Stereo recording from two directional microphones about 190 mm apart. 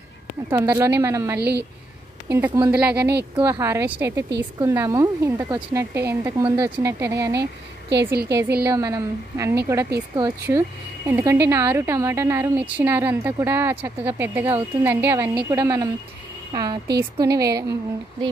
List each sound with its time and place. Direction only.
0.5 s a woman's voice: 15° right (ahead or behind)
1.4 s a woman's voice: 60° right (ahead or behind)
2.2 s a woman's voice: 15° right (ahead or behind)
7.9 s a woman's voice: 60° right (ahead or behind)
8.6 s a woman's voice: 15° right (ahead or behind)